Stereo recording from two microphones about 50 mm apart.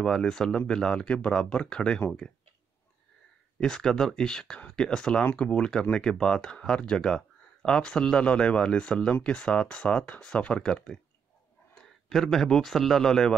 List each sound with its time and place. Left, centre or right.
0.0 s speech: centre
3.5 s speech: centre
12.1 s speech: centre